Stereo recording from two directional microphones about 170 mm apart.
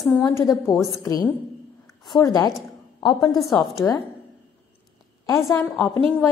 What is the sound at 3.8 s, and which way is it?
Speech, 5° left (ahead or behind).